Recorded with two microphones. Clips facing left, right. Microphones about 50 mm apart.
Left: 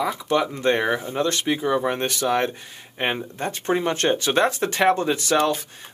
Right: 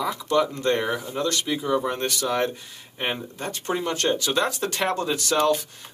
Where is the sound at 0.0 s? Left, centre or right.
Left.